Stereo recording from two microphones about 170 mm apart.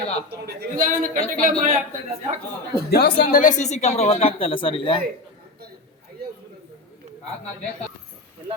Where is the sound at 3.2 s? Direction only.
50° left (ahead or behind); by 5.0 s 30° left (ahead or behind).